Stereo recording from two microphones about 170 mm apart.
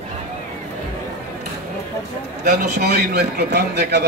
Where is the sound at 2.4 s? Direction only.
70° right (ahead or behind).